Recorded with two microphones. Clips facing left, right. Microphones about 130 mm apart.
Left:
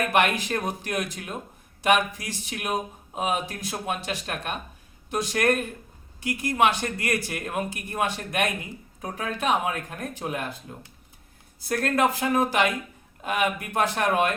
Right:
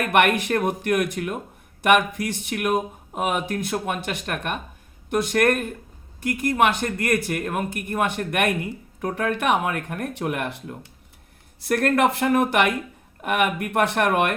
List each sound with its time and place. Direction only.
0.0 s speech: 55° right (ahead or behind)